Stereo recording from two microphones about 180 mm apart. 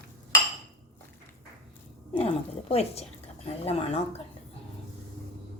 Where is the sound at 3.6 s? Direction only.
35° left (ahead or behind).